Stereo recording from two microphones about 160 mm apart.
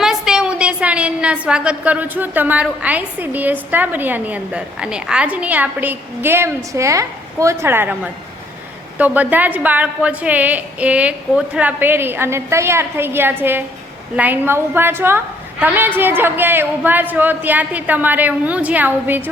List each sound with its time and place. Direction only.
0.0 s a woman's voice: 5° right (ahead or behind)